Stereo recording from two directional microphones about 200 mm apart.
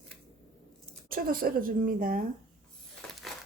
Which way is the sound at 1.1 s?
45° right (ahead or behind).